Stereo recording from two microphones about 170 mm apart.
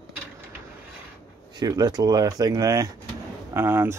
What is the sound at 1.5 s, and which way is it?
Speech, 25° right (ahead or behind).